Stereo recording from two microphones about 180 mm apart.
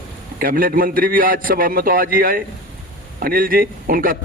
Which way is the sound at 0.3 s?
55° right (ahead or behind).